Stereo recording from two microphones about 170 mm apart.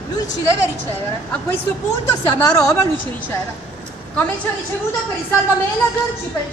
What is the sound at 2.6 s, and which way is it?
Speech, 15° left (ahead or behind).